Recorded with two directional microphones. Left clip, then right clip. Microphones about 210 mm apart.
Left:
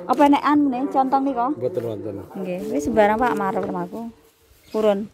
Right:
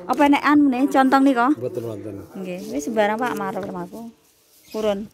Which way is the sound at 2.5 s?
5° left (ahead or behind).